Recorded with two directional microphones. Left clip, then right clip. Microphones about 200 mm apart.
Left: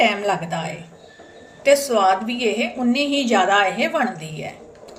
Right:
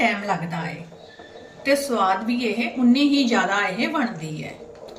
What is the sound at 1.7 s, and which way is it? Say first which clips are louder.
A woman's voice: left 5 dB; 45° left (ahead or behind).